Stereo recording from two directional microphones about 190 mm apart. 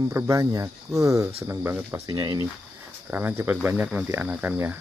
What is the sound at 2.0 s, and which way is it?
Speech, 20° right (ahead or behind).